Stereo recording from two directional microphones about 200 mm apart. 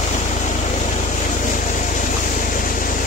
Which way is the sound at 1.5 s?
40° left (ahead or behind).